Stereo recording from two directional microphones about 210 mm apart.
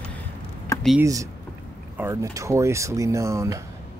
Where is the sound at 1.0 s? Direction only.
15° right (ahead or behind).